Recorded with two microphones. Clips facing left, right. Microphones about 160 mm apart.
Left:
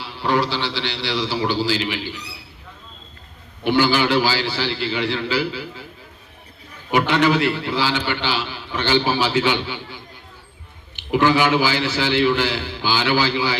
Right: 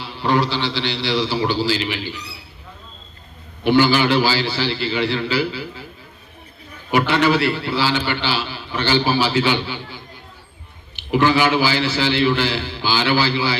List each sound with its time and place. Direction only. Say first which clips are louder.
0.2 s a man's voice: right 1 dB; 10° left (ahead or behind)
3.6 s a man's voice: right 2 dB; 15° left (ahead or behind)
5.1 s a man's voice: right 1 dB; 10° right (ahead or behind)
7.1 s a man's voice: even; 5° right (ahead or behind)
7.4 s a man's voice: right 1 dB; 15° left (ahead or behind)